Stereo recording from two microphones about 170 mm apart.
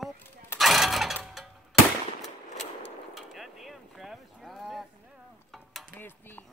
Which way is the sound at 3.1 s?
Centre (ahead or behind).